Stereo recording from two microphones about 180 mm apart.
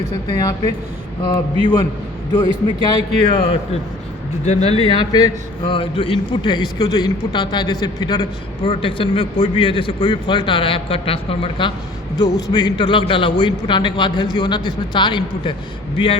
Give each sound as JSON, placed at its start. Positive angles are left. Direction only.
{"t": 0.3, "sound": "a man's voice", "side_deg": 20}